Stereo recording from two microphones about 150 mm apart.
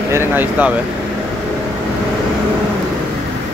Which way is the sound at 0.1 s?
15° right (ahead or behind).